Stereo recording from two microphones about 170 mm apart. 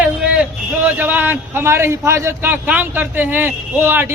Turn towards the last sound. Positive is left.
turn(degrees=-15)  # may be behind; listen again after turning